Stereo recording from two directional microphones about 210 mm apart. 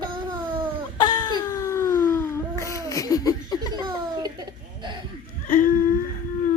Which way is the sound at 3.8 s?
20° right (ahead or behind).